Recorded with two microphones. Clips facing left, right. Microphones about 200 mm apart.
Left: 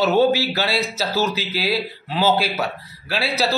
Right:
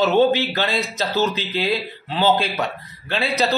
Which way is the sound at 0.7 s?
15° right (ahead or behind).